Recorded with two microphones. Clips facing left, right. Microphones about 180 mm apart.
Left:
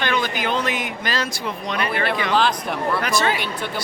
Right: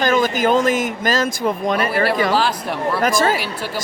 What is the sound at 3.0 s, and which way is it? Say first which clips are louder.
Speech: right 4 dB; 45° right (ahead or behind).